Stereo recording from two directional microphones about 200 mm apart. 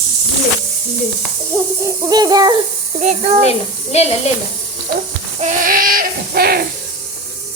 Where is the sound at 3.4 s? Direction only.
30° left (ahead or behind).